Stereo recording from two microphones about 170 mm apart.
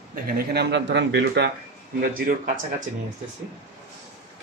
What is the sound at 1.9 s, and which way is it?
Speech, 60° right (ahead or behind).